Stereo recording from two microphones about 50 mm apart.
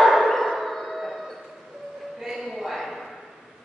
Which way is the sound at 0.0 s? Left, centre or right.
Centre.